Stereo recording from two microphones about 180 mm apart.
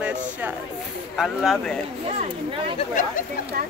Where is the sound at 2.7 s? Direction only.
45° left (ahead or behind).